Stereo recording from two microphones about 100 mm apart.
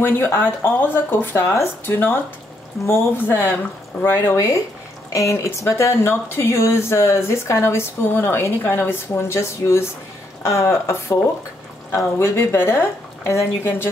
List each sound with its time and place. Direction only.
0.0 s speech: 25° left (ahead or behind)
12.2 s speech: 25° left (ahead or behind)